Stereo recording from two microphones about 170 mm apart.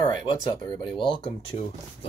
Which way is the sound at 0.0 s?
25° left (ahead or behind).